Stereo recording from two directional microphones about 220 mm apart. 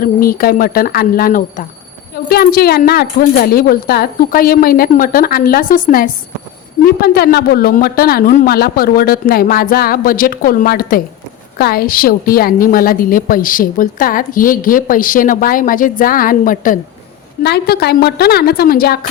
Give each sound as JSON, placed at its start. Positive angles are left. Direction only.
{"t": 0.0, "sound": "a woman's voice", "side_deg": 40}